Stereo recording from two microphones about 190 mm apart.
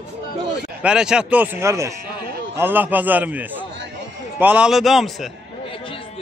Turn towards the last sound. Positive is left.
turn(degrees=0)  # may be behind; listen again after turning